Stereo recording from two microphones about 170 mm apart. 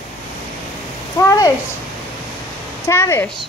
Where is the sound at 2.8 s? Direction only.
15° left (ahead or behind).